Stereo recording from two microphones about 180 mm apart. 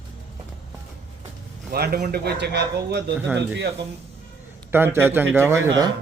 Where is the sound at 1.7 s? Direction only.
60° right (ahead or behind).